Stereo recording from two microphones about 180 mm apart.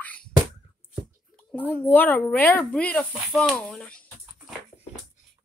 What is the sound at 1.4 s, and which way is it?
Speech, 10° left (ahead or behind).